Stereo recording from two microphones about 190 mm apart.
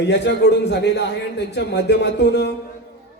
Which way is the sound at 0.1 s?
65° left (ahead or behind).